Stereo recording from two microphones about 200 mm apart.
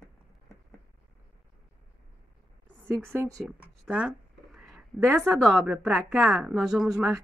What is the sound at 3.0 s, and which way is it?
Speech, 10° right (ahead or behind).